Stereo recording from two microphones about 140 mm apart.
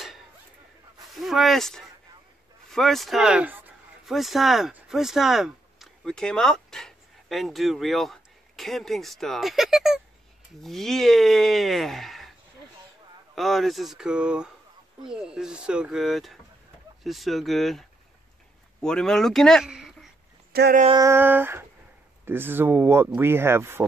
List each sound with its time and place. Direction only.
1.1 s speech: centre (ahead or behind)
4.0 s speech: centre (ahead or behind)
20.5 s speech: 90° right
20.9 s speech: 20° right (ahead or behind)